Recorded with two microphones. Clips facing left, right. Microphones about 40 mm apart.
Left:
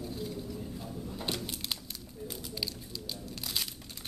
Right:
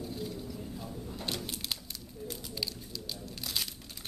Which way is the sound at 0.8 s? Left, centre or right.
Centre.